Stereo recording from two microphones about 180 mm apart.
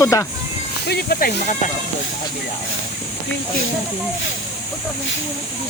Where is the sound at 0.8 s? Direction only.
60° left (ahead or behind).